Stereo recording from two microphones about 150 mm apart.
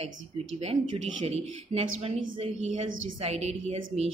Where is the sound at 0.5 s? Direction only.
45° right (ahead or behind).